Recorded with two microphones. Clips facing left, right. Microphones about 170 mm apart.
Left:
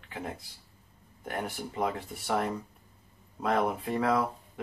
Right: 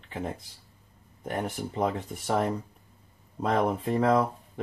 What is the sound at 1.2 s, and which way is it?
Speech, 25° right (ahead or behind).